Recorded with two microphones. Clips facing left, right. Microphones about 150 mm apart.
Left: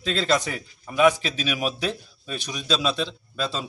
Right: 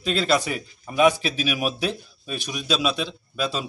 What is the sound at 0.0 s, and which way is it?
A man's voice, 10° right (ahead or behind).